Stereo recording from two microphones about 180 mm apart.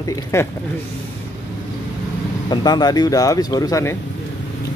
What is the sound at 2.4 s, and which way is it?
Speech, 25° left (ahead or behind).